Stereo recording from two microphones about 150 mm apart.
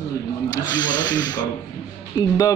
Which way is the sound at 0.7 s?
30° left (ahead or behind).